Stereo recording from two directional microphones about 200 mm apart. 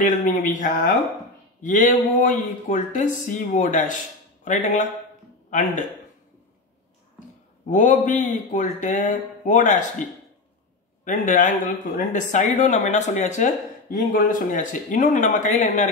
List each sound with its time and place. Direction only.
0.0 s speech: 40° left (ahead or behind)
7.6 s speech: 40° left (ahead or behind)
11.1 s speech: 40° left (ahead or behind)